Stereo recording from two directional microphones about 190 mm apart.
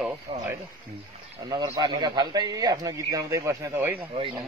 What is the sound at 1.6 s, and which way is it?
A man's voice, 20° right (ahead or behind).